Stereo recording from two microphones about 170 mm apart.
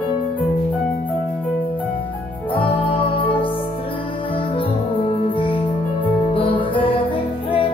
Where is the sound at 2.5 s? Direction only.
30° left (ahead or behind).